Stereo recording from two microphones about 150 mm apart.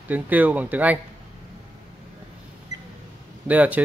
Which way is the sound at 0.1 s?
10° right (ahead or behind).